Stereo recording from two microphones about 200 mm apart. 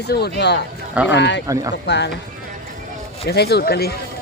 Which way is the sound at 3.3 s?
55° left (ahead or behind).